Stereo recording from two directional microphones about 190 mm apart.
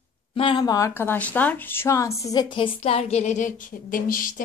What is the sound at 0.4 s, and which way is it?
Speech, 25° left (ahead or behind).